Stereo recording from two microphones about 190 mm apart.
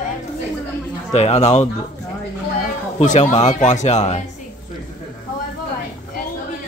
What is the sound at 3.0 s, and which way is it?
Speech, 35° left (ahead or behind).